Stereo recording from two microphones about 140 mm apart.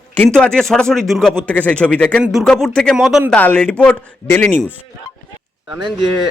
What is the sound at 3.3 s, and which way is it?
Speech, 10° left (ahead or behind).